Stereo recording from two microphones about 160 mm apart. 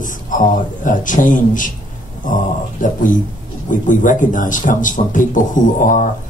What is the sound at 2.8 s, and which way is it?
A man's voice, 55° left (ahead or behind).